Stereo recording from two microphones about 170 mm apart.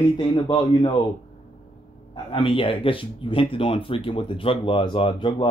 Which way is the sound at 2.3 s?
30° left (ahead or behind).